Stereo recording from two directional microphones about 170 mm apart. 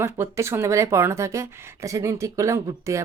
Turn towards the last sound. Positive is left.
turn(degrees=-15)  # may be behind; listen again after turning